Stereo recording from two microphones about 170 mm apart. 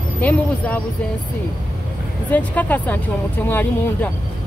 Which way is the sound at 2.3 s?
10° left (ahead or behind).